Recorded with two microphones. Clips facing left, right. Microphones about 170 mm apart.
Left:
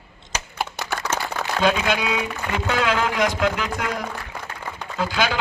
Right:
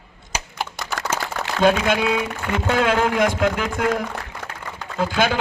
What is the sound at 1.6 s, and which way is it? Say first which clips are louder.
A man's voice: right 4 dB; 50° right (ahead or behind).